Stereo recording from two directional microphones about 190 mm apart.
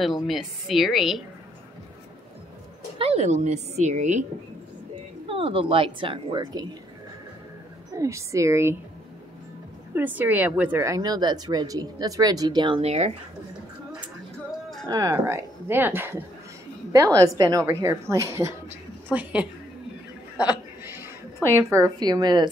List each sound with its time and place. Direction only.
0.0 s a woman's voice: centre (ahead or behind)
3.0 s speech: 35° right (ahead or behind)
5.3 s speech: 25° right (ahead or behind)
7.9 s a woman's voice: 15° right (ahead or behind)
9.9 s speech: 10° right (ahead or behind); by 13.1 s 35° right (ahead or behind)
14.9 s a woman's voice: 20° right (ahead or behind)
20.3 s a sound: 10° right (ahead or behind)
21.6 s speech: 15° right (ahead or behind)